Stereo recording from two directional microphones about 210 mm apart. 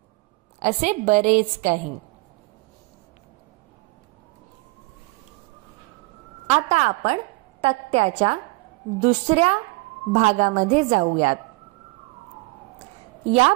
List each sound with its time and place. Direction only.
0.6 s a woman's voice: 35° right (ahead or behind)
6.5 s a woman's voice: 30° right (ahead or behind)
13.2 s a woman's voice: 30° right (ahead or behind)